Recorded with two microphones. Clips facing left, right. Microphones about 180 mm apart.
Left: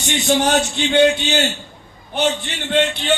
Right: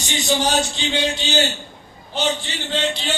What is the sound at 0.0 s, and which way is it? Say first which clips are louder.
A man's voice: left 4 dB; 60° left (ahead or behind).